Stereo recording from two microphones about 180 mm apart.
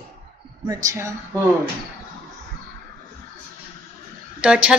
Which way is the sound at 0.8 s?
15° right (ahead or behind).